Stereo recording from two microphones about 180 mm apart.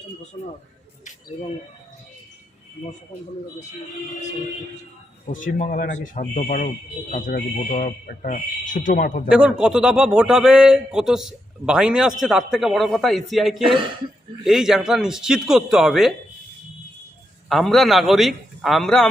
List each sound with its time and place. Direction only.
0.3 s speech: 35° left (ahead or behind)
5.2 s speech: 45° left (ahead or behind)
9.3 s speech: 5° right (ahead or behind)
17.5 s speech: centre (ahead or behind)